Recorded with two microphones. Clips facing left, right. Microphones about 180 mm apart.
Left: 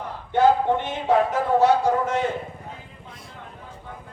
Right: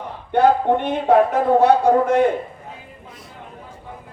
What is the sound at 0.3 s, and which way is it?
Speech, 55° right (ahead or behind).